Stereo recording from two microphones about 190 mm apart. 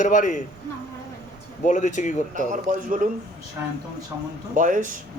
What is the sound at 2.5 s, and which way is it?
Speech, 45° right (ahead or behind).